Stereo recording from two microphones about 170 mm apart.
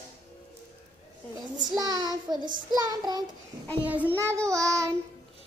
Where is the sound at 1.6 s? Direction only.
25° right (ahead or behind).